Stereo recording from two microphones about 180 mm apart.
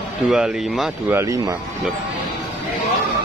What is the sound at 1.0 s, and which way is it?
Speech, 15° right (ahead or behind).